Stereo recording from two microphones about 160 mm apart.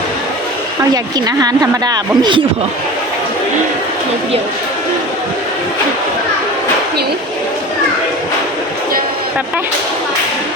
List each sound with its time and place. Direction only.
1.4 s speech: 25° right (ahead or behind)